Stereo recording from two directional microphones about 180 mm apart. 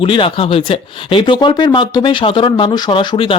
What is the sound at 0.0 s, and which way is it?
Speech, 30° left (ahead or behind).